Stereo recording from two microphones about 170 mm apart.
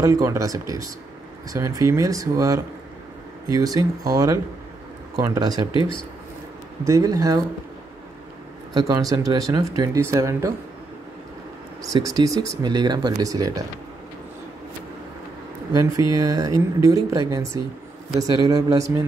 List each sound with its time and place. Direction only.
0.0 s speech: 20° right (ahead or behind)
5.7 s speech: 30° left (ahead or behind)
6.8 s speech: 20° right (ahead or behind)
8.7 s speech: 25° right (ahead or behind)
11.8 s speech: 20° right (ahead or behind)
15.7 s speech: 20° right (ahead or behind)